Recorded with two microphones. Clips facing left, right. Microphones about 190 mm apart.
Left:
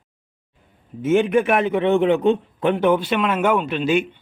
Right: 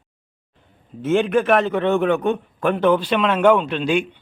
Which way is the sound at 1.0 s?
10° left (ahead or behind).